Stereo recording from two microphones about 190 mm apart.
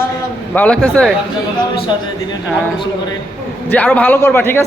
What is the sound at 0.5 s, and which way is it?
Speech, 5° left (ahead or behind).